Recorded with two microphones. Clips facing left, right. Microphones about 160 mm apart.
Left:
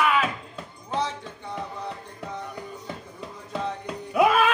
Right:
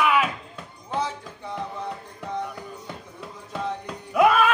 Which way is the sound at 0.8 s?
5° right (ahead or behind).